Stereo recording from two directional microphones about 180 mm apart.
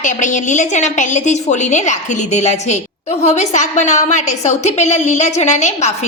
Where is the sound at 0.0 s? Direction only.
45° left (ahead or behind).